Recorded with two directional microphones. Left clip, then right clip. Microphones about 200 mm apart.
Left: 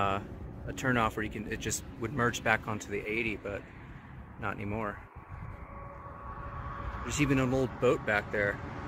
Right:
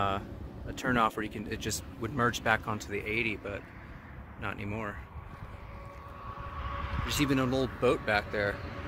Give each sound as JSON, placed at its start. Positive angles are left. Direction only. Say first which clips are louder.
{"t": 0.7, "sound": "speech", "louder": "right 1 dB", "side_deg": -5}
{"t": 6.7, "sound": "a sound", "louder": "right 5 dB", "side_deg": 55}
{"t": 7.3, "sound": "speech", "louder": "even", "side_deg": -10}